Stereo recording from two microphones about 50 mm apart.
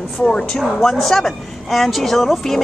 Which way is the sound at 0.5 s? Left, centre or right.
Centre.